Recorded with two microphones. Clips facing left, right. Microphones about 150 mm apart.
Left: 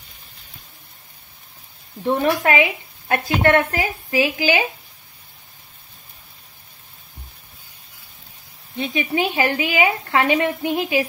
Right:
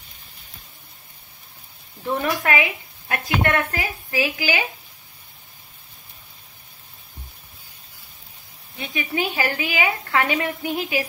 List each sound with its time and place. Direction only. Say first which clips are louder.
2.0 s a woman's voice: left 4 dB; 25° left (ahead or behind)
8.7 s a woman's voice: left 4 dB; 20° left (ahead or behind)